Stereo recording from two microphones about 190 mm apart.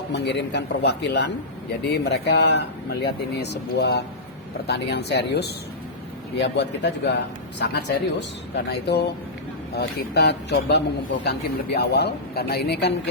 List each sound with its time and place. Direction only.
0.1 s a man's voice: 65° left (ahead or behind)